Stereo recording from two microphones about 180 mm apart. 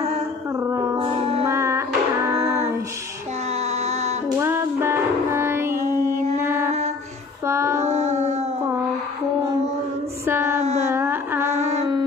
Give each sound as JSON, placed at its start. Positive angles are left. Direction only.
{"t": 0.6, "sound": "music", "side_deg": -15}
{"t": 0.9, "sound": "music", "side_deg": -30}
{"t": 1.4, "sound": "music", "side_deg": -15}
{"t": 3.6, "sound": "music", "side_deg": -35}
{"t": 4.4, "sound": "music", "side_deg": -15}
{"t": 6.3, "sound": "mantra", "side_deg": -15}
{"t": 7.4, "sound": "child singing", "side_deg": -15}
{"t": 7.8, "sound": "carnatic music", "side_deg": -40}
{"t": 10.2, "sound": "music", "side_deg": -15}
{"t": 10.9, "sound": "a sound", "side_deg": -10}